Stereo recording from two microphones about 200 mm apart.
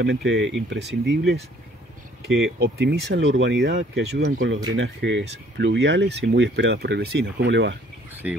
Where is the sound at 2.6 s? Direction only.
55° right (ahead or behind).